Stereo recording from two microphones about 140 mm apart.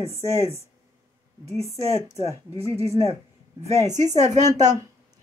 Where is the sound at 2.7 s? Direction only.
45° right (ahead or behind).